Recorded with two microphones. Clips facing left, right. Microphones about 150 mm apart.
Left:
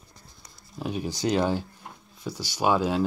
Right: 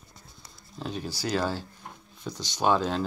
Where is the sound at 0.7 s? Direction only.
10° left (ahead or behind).